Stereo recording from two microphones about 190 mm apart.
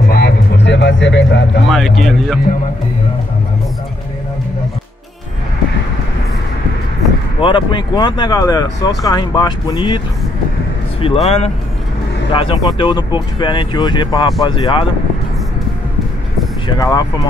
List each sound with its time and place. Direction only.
0.1 s a sound: 60° left (ahead or behind)
1.7 s speech: centre (ahead or behind)
7.3 s speech: 25° left (ahead or behind)
16.6 s speech: 20° left (ahead or behind)